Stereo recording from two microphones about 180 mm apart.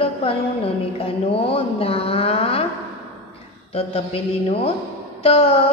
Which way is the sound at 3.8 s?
35° left (ahead or behind).